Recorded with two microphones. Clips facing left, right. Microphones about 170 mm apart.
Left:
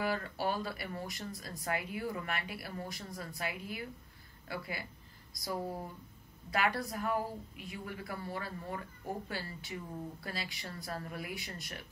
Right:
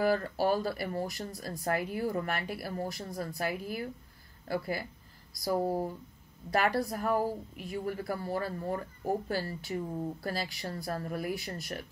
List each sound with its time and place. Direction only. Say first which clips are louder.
0.0 s speech: right 7 dB; 40° right (ahead or behind)